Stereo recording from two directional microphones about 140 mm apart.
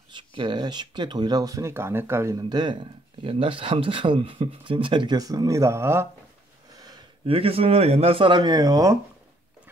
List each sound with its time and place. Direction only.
0.1 s speech: 35° right (ahead or behind); by 2.3 s 15° right (ahead or behind)
2.3 s speech: 30° right (ahead or behind)
6.7 s a sound: 25° right (ahead or behind)
7.2 s speech: 45° right (ahead or behind); by 8.9 s 25° right (ahead or behind)